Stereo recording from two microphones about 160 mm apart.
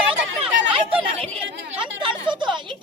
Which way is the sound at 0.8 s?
35° right (ahead or behind).